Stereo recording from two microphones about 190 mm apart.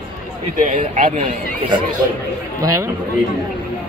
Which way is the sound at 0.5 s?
45° right (ahead or behind).